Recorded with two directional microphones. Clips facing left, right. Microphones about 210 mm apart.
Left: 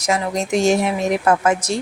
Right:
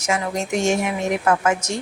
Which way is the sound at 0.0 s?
35° left (ahead or behind).